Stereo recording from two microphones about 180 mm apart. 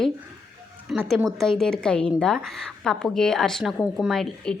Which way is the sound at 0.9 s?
Centre (ahead or behind).